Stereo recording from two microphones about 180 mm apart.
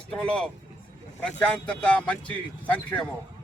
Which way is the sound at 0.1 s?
5° left (ahead or behind).